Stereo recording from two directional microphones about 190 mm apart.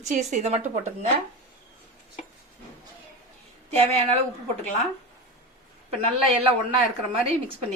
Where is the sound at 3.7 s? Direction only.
35° right (ahead or behind).